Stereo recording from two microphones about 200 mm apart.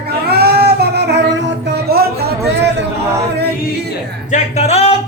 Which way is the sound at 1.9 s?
50° right (ahead or behind).